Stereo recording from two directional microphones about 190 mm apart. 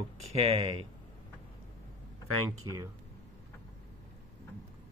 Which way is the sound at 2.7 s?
20° right (ahead or behind).